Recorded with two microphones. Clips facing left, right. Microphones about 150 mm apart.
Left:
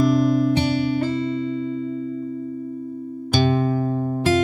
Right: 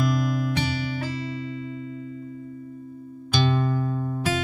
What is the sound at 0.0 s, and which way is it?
Music, 25° left (ahead or behind).